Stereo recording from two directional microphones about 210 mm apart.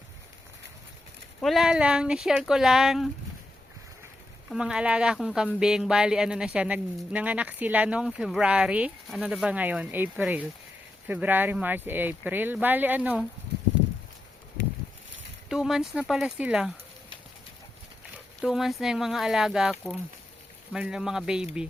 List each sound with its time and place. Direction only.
1.4 s speech: centre (ahead or behind)
4.5 s speech: 5° right (ahead or behind)
15.4 s speech: centre (ahead or behind)
18.4 s speech: centre (ahead or behind)
20.7 s speech: 5° right (ahead or behind)